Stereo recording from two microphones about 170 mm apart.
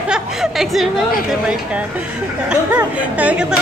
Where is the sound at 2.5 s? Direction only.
10° right (ahead or behind).